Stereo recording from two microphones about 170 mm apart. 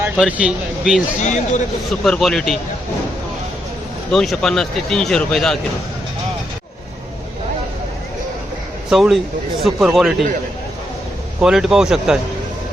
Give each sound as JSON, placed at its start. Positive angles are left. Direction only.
{"t": 0.2, "sound": "speech", "side_deg": -5}
{"t": 1.2, "sound": "speech", "side_deg": 45}
{"t": 2.0, "sound": "speech", "side_deg": 0}
{"t": 4.1, "sound": "speech", "side_deg": 5}
{"t": 8.9, "sound": "speech", "side_deg": 0}
{"t": 11.3, "sound": "speech", "side_deg": -5}